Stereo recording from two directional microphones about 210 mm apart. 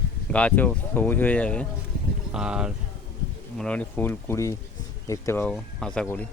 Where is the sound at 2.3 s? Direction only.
5° right (ahead or behind).